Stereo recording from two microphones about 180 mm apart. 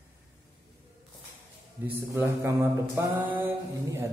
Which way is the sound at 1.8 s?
10° right (ahead or behind).